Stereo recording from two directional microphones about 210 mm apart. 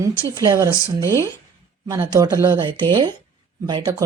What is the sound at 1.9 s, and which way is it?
Speech, 15° right (ahead or behind).